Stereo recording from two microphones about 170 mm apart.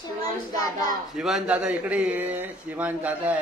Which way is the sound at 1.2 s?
Centre (ahead or behind).